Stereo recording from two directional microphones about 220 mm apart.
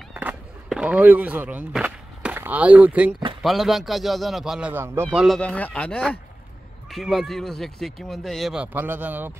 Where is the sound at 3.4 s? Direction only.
Centre (ahead or behind).